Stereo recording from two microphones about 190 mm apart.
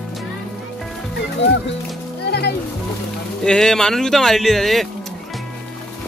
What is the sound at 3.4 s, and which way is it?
Speech, 5° left (ahead or behind).